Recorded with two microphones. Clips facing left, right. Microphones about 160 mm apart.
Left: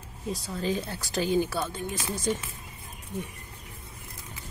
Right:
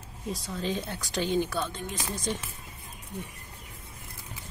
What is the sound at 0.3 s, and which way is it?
Speech, centre (ahead or behind).